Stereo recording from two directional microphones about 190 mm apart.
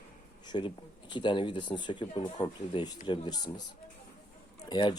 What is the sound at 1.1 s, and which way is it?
Speech, 25° left (ahead or behind).